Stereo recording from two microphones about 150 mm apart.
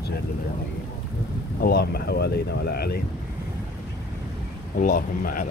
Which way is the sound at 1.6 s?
85° left.